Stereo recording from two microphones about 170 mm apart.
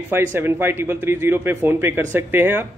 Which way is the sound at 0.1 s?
15° right (ahead or behind).